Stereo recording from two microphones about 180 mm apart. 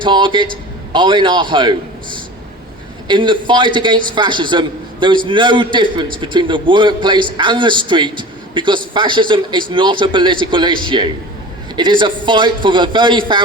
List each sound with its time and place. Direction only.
0.0 s a man's voice: 25° right (ahead or behind)
3.1 s a man's voice: 25° right (ahead or behind)